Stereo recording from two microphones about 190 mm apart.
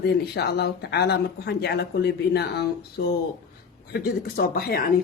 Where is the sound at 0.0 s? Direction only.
60° left (ahead or behind).